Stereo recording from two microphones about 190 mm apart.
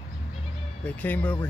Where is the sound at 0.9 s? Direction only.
10° left (ahead or behind).